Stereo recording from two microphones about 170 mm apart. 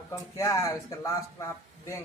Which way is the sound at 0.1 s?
15° left (ahead or behind).